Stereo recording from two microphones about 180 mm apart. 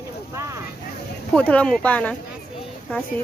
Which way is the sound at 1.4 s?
10° left (ahead or behind).